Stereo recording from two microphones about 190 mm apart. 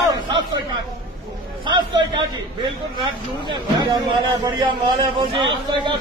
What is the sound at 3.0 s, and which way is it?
Speech, 25° right (ahead or behind).